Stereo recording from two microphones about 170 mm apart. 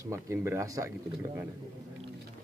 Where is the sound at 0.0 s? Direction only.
15° right (ahead or behind).